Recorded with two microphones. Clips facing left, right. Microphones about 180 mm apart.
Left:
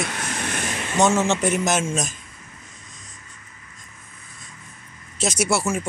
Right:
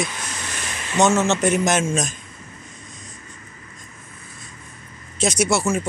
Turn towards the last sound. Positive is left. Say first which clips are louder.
# right 2 dB
turn(degrees=10)  # may be behind; listen again after turning